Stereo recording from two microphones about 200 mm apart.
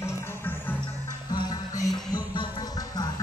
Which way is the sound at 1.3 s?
20° left (ahead or behind).